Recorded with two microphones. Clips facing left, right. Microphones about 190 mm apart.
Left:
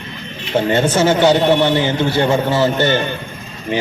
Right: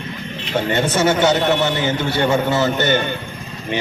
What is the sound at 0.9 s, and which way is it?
Speech, 30° left (ahead or behind).